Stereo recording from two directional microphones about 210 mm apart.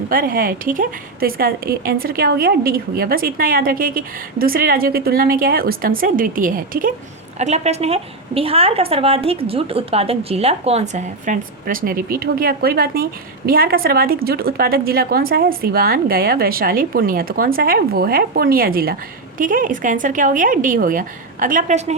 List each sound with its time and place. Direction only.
0.1 s a woman's voice: 45° right (ahead or behind)